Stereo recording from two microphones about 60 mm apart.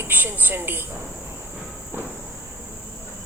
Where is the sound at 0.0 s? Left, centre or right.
Right.